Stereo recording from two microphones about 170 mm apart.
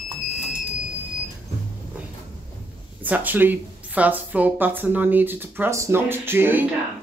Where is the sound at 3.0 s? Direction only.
10° right (ahead or behind).